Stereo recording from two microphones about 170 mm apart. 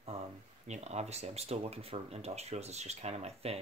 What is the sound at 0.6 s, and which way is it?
Speech, 40° right (ahead or behind).